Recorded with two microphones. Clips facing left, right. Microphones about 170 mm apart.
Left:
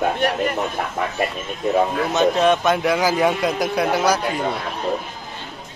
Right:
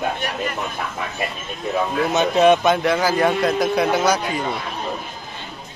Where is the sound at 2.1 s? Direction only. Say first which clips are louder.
Right 3 dB; 5° right (ahead or behind).